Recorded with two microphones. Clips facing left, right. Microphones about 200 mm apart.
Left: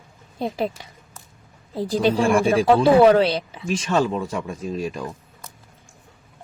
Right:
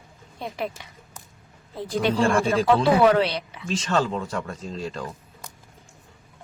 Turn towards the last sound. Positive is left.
turn(degrees=15)  # may be behind; listen again after turning